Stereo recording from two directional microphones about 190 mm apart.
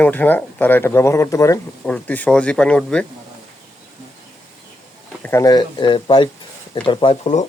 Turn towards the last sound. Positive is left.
turn(degrees=25)  # may be behind; listen again after turning